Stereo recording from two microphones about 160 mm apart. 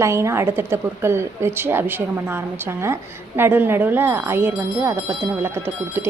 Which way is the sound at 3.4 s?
15° right (ahead or behind).